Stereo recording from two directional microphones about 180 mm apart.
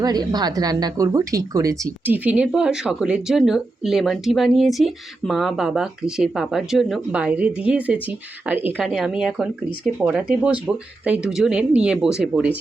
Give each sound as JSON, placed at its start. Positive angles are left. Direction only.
{"t": 0.0, "sound": "a woman's voice", "side_deg": -20}